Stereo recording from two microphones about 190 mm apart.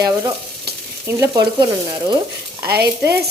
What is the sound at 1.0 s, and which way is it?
Speech, 15° right (ahead or behind).